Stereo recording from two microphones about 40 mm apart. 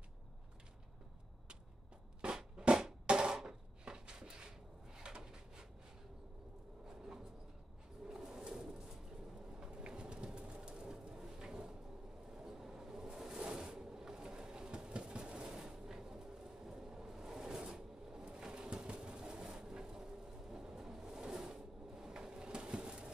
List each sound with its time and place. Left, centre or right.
2.2 s drum: right
3.1 s a sound: right
6.9 s bird: centre
8.1 s pigeon: centre
9.5 s bird: right
12.4 s vehicle: centre
13.4 s a sound: right